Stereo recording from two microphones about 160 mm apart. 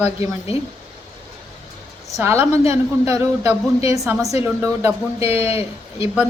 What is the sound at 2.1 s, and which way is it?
Speech, 15° right (ahead or behind).